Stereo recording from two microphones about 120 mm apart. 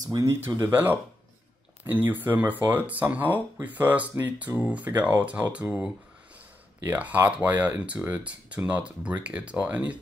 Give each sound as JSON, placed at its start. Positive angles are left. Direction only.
{"t": 0.1, "sound": "speech", "side_deg": -25}
{"t": 2.0, "sound": "speech", "side_deg": -15}